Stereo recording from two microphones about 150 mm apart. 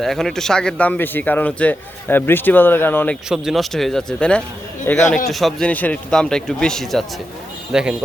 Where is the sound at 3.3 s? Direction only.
Centre (ahead or behind).